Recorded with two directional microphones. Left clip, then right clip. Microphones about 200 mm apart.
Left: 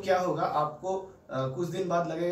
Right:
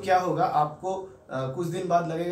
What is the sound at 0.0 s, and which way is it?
Speech, 5° right (ahead or behind).